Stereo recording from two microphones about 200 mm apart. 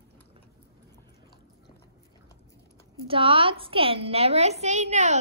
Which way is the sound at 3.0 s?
25° right (ahead or behind).